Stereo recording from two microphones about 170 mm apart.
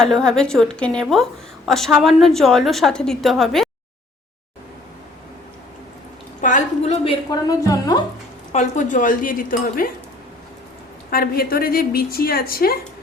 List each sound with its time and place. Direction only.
0.0 s a woman's voice: 5° left (ahead or behind)
6.4 s a sound: 45° left (ahead or behind)
7.3 s a woman's voice: 20° left (ahead or behind)
8.5 s speech: 45° left (ahead or behind)
11.1 s a woman's voice: 60° left (ahead or behind)